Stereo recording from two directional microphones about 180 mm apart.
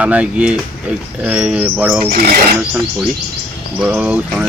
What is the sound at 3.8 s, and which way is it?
Speech, 5° right (ahead or behind).